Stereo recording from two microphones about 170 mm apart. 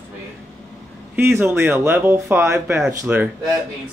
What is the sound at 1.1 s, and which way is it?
Speech, 15° right (ahead or behind).